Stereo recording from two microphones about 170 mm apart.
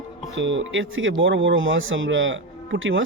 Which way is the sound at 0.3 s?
90° right.